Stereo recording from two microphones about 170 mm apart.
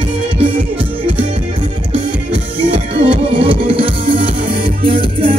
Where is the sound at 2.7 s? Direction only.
30° right (ahead or behind).